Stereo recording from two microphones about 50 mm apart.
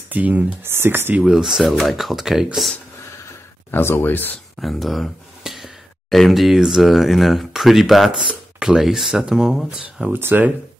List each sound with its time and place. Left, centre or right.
0.1 s speech: right
0.7 s speech: right
1.2 s speech: centre
3.7 s speech: left
4.1 s speech: left
4.6 s speech: centre